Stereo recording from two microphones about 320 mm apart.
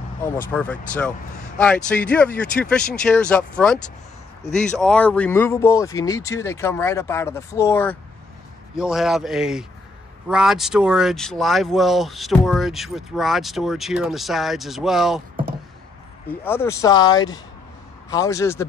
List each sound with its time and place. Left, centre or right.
0.3 s speech: centre
16.4 s speech: centre